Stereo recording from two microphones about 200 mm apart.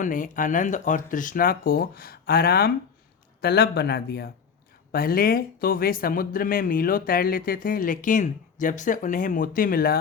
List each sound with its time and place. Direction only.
0.0 s speech: 40° left (ahead or behind)